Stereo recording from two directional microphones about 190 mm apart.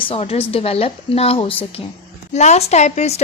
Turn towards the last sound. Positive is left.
turn(degrees=35)  # may be behind; listen again after turning